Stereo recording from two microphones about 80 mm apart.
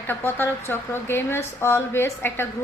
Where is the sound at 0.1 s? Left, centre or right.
Left.